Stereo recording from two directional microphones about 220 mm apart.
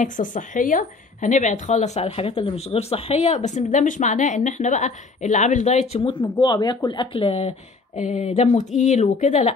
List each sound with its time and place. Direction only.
0.0 s a woman's voice: 35° left (ahead or behind)